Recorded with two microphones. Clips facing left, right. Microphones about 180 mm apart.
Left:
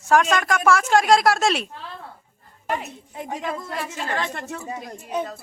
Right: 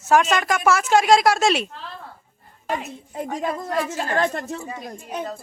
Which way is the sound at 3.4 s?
45° right (ahead or behind).